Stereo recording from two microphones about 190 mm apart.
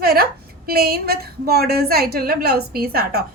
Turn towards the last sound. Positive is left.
turn(degrees=-55)  # may be behind; listen again after turning